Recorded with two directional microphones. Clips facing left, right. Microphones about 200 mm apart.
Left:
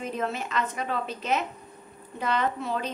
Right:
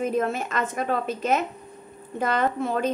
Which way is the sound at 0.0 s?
45° right (ahead or behind).